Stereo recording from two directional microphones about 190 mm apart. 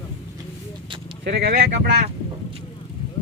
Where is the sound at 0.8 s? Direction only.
25° right (ahead or behind).